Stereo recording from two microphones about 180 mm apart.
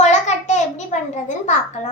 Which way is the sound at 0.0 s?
40° left (ahead or behind).